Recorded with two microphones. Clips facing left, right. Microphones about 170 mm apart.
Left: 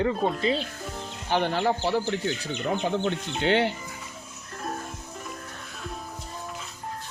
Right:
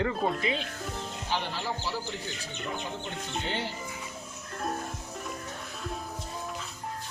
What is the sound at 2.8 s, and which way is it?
Speech, 85° left.